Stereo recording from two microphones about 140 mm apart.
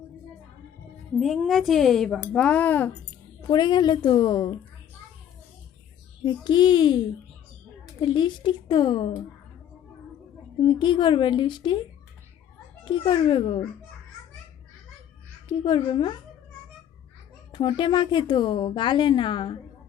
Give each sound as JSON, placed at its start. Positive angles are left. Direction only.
{"t": 1.2, "sound": "speech", "side_deg": 0}
{"t": 3.5, "sound": "a woman's voice", "side_deg": 30}
{"t": 6.2, "sound": "a woman's voice", "side_deg": 35}
{"t": 8.0, "sound": "a woman's voice", "side_deg": 35}
{"t": 10.6, "sound": "a woman's voice", "side_deg": 35}
{"t": 12.8, "sound": "a woman's voice", "side_deg": 35}
{"t": 15.4, "sound": "a woman's voice", "side_deg": 35}
{"t": 17.5, "sound": "a woman's voice", "side_deg": 35}